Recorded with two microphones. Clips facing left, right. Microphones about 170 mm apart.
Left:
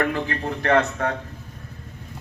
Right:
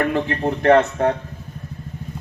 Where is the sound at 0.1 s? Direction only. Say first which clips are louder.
Right 5 dB; 25° right (ahead or behind).